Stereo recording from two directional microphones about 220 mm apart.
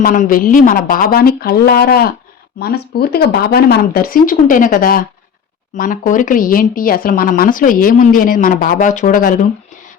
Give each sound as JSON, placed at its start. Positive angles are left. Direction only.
{"t": 0.0, "sound": "speech", "side_deg": 40}